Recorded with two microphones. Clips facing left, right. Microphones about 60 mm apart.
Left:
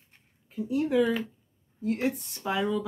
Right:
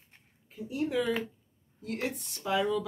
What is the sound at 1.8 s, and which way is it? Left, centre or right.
Speech, left.